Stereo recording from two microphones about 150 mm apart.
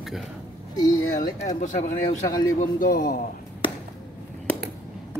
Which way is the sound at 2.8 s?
75° left (ahead or behind).